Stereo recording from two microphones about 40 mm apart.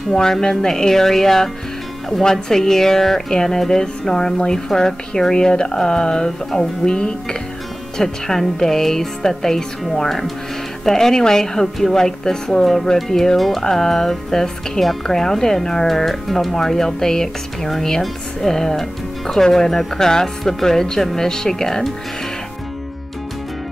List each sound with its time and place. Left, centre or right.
0.1 s speech: centre
8.0 s speech: centre